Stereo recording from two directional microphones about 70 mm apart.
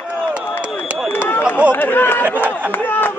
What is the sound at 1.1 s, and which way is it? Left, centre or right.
Run, left.